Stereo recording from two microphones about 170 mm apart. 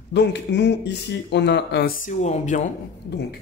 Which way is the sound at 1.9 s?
50° left (ahead or behind).